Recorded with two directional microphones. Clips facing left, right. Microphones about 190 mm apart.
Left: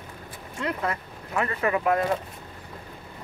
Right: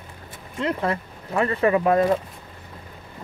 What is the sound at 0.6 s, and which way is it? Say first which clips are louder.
Speech: right 5 dB; 30° right (ahead or behind).